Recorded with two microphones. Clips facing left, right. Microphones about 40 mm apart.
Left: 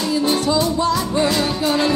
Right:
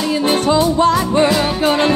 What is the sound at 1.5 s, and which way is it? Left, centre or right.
Music, right.